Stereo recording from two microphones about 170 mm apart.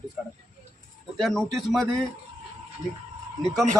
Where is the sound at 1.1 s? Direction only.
Centre (ahead or behind).